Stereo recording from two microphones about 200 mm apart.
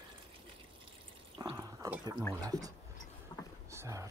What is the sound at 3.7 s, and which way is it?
Rowboat, 15° right (ahead or behind).